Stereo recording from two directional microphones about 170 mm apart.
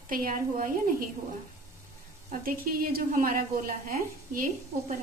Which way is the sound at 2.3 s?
55° right (ahead or behind).